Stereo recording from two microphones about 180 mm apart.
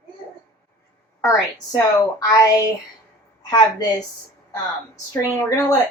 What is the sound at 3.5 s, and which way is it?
Speech, 20° left (ahead or behind).